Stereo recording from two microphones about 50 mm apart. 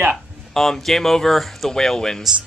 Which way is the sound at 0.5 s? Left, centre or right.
Centre.